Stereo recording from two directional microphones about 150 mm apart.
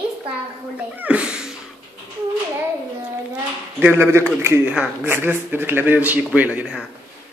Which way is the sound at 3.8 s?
15° right (ahead or behind).